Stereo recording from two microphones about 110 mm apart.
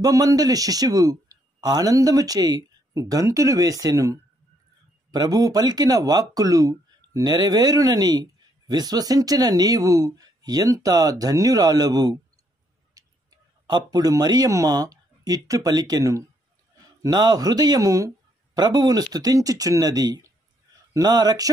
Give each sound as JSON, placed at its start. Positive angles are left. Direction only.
{"t": 0.0, "sound": "speech", "side_deg": -30}